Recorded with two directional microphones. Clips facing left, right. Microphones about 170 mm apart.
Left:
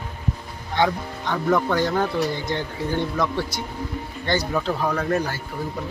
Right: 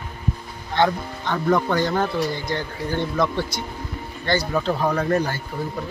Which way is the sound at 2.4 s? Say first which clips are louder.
Even; 20° left (ahead or behind).